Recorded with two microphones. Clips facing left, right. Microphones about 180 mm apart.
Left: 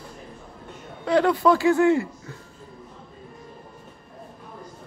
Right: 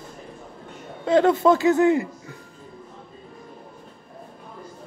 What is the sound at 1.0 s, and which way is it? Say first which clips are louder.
Speech: right 2 dB; 20° right (ahead or behind).